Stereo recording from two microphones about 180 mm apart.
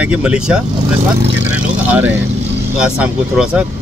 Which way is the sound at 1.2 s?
80° right.